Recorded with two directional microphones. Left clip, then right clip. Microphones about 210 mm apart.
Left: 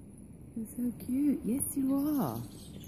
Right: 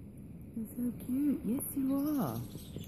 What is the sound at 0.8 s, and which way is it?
Speech, centre (ahead or behind).